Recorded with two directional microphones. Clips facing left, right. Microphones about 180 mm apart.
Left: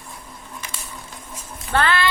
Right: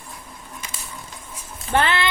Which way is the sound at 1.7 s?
20° right (ahead or behind).